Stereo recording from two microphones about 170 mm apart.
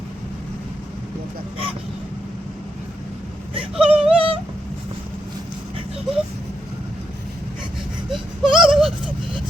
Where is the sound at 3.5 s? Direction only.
30° right (ahead or behind).